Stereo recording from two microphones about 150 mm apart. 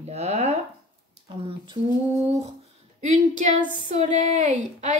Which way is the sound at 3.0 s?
55° right (ahead or behind).